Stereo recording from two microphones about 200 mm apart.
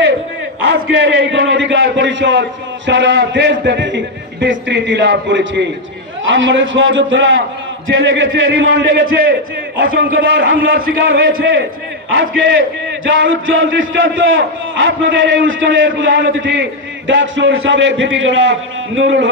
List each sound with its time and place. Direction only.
0.6 s a man's voice: 75° right (ahead or behind)